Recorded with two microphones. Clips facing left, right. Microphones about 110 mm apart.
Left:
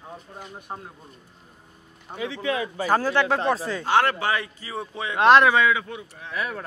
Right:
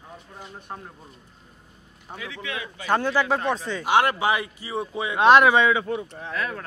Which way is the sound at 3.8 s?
15° right (ahead or behind).